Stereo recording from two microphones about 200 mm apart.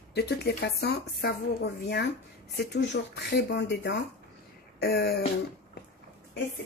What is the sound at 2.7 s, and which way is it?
A woman's voice, 60° left (ahead or behind).